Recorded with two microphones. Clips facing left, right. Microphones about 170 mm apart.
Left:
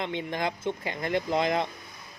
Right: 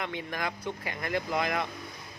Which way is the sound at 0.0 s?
25° left (ahead or behind).